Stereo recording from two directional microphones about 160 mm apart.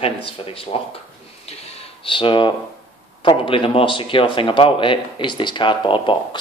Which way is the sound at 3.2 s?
30° left (ahead or behind).